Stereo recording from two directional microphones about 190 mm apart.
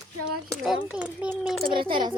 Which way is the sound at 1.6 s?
25° right (ahead or behind).